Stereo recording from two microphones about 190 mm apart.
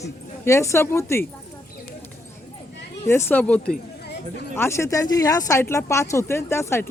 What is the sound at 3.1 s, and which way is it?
Speech, 10° left (ahead or behind).